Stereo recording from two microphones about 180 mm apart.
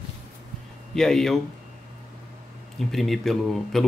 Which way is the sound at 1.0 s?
Centre (ahead or behind).